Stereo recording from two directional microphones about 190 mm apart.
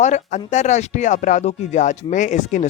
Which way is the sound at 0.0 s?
40° left (ahead or behind).